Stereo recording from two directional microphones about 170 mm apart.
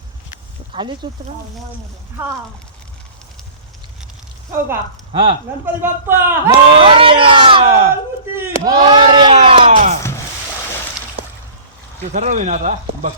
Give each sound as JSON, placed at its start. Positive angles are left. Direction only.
{"t": 0.7, "sound": "speech", "side_deg": -30}
{"t": 5.1, "sound": "speech", "side_deg": -30}
{"t": 5.6, "sound": "speech", "side_deg": -15}
{"t": 6.8, "sound": "speech", "side_deg": -30}
{"t": 8.4, "sound": "crowd", "side_deg": -20}
{"t": 9.3, "sound": "a sound", "side_deg": -35}
{"t": 12.1, "sound": "speech", "side_deg": -45}